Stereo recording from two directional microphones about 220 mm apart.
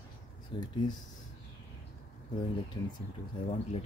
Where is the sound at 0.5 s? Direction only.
20° left (ahead or behind).